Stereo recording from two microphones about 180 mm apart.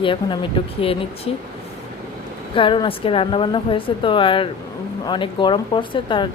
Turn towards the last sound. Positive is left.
turn(degrees=25)  # may be behind; listen again after turning